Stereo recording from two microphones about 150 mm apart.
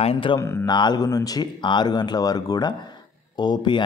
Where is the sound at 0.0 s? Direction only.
40° left (ahead or behind).